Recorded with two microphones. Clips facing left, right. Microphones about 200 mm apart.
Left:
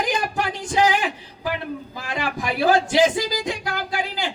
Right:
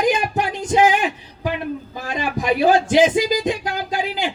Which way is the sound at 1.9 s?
20° right (ahead or behind).